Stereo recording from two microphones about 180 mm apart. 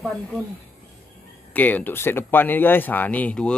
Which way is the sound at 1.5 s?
10° left (ahead or behind).